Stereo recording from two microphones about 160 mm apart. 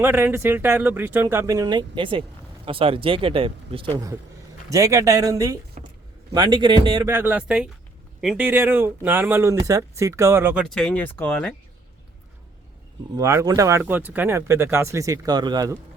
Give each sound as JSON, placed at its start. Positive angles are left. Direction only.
{"t": 0.0, "sound": "speech", "side_deg": -15}
{"t": 4.7, "sound": "speech", "side_deg": -20}
{"t": 5.8, "sound": "a sound", "side_deg": -50}
{"t": 6.3, "sound": "speech", "side_deg": -30}
{"t": 7.1, "sound": "speech", "side_deg": -10}
{"t": 10.6, "sound": "speech", "side_deg": 5}
{"t": 13.1, "sound": "speech", "side_deg": -20}